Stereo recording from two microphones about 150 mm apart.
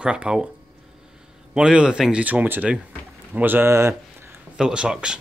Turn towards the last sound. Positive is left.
turn(degrees=-5)  # may be behind; listen again after turning